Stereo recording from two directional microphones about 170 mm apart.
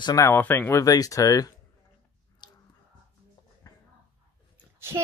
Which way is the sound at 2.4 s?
25° left (ahead or behind).